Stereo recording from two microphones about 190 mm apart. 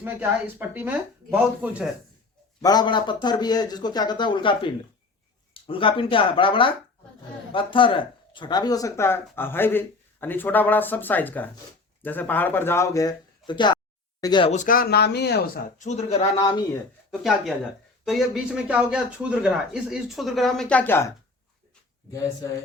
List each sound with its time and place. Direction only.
0.0 s speech: 10° right (ahead or behind)
2.6 s speech: 20° left (ahead or behind)
14.5 s speech: 45° left (ahead or behind); by 15.6 s 60° left (ahead or behind)
15.8 s speech: 35° left (ahead or behind)
16.7 s speech: centre (ahead or behind)
22.1 s speech: 20° left (ahead or behind)